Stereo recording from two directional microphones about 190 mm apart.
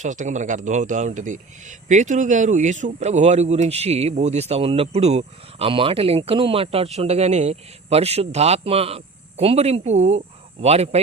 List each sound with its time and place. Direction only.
0.0 s speech: 40° right (ahead or behind)